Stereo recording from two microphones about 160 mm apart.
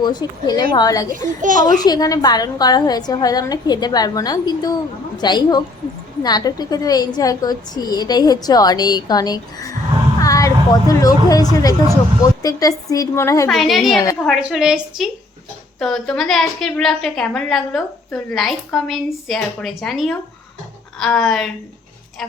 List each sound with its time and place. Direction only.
0.0 s a woman's voice: 25° left (ahead or behind)
1.1 s a child's voice: 55° right (ahead or behind)
1.8 s a woman's voice: 25° left (ahead or behind)
13.5 s a woman's voice: centre (ahead or behind)